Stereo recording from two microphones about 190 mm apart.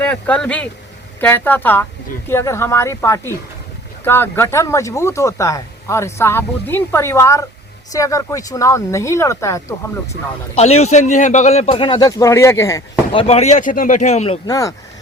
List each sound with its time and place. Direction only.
0.0 s speech: 5° left (ahead or behind)
10.5 s a man's voice: 35° left (ahead or behind); by 12.8 s 15° left (ahead or behind)
13.1 s a man's voice: 30° left (ahead or behind)
14.4 s speech: 20° left (ahead or behind)